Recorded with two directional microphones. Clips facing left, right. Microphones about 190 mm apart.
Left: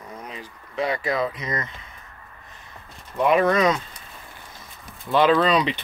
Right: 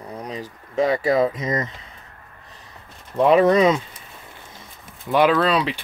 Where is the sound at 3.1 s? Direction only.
30° right (ahead or behind).